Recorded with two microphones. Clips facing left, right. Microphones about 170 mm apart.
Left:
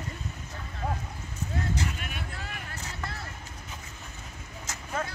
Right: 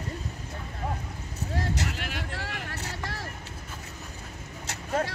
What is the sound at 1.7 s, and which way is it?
Vehicle, 75° right (ahead or behind).